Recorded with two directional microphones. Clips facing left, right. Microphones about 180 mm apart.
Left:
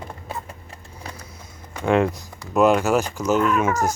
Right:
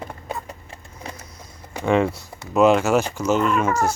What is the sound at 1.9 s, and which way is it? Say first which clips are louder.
Speech: even; centre (ahead or behind).